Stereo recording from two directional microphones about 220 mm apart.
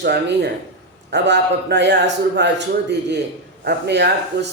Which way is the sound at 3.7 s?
50° right (ahead or behind).